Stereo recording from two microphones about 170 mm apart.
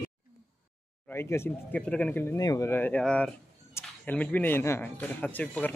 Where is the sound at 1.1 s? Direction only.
15° left (ahead or behind).